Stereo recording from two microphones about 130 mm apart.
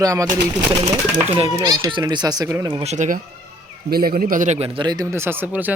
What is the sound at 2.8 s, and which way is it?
Speech, 65° right (ahead or behind).